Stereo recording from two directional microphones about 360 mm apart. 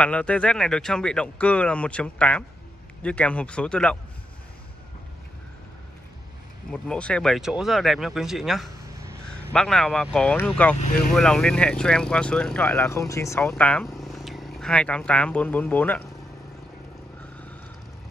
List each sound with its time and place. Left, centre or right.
0.0 s speech: centre
6.7 s speech: centre
10.8 s speech: left
11.1 s speech: centre